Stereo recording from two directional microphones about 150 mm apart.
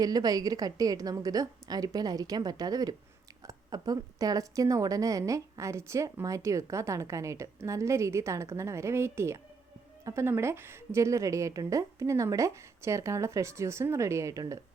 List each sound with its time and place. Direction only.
0.0 s a woman's voice: 25° right (ahead or behind)